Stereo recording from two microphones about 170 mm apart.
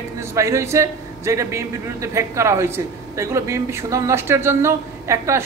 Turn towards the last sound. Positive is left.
turn(degrees=-15)  # may be behind; listen again after turning